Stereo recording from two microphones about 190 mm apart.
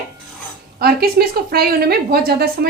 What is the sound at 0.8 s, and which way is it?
A woman's voice, 55° right (ahead or behind).